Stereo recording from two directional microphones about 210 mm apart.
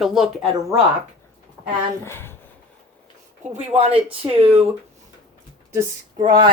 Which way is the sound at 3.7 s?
25° right (ahead or behind).